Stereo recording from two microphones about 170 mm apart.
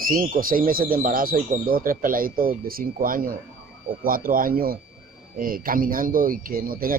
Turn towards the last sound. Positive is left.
turn(degrees=-60)  # may be behind; listen again after turning